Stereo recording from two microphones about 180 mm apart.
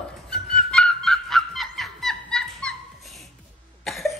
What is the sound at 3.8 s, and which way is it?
Cough, centre (ahead or behind).